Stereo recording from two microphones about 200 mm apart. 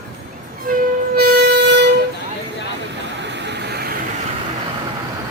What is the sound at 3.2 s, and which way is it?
Vehicle, 60° right (ahead or behind).